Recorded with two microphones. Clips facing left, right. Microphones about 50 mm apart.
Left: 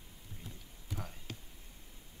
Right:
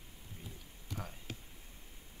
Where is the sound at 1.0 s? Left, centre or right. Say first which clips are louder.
Right 1 dB; centre.